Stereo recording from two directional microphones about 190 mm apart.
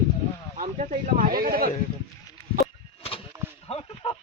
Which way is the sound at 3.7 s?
30° left (ahead or behind).